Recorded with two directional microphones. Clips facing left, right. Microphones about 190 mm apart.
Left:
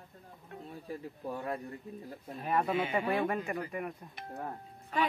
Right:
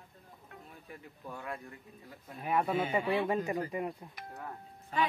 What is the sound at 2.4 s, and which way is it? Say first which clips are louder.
Speech: even; 5° right (ahead or behind).